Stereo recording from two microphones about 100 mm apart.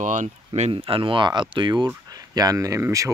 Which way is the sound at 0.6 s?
75° right (ahead or behind).